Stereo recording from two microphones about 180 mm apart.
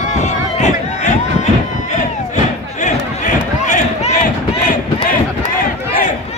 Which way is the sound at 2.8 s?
45° left (ahead or behind).